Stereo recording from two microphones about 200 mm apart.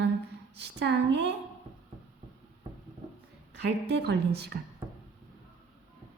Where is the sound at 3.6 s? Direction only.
55° right (ahead or behind).